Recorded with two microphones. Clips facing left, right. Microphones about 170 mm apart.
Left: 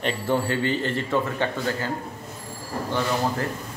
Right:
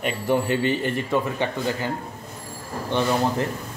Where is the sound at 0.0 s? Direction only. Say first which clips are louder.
Right 1 dB; 15° right (ahead or behind).